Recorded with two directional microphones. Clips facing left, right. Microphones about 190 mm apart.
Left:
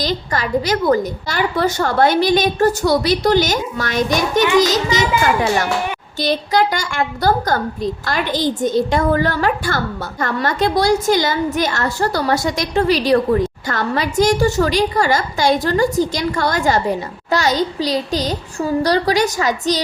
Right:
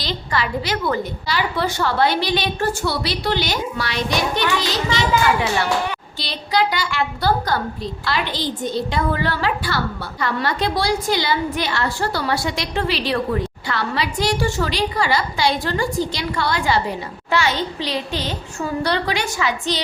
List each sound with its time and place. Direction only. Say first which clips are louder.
0.0 s a woman's voice: left 3 dB; 45° left (ahead or behind)